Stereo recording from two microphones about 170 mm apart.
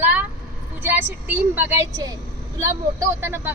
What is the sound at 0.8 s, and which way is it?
Speech, 10° right (ahead or behind).